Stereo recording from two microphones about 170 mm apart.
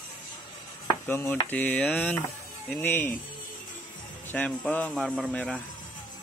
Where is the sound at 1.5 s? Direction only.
10° left (ahead or behind).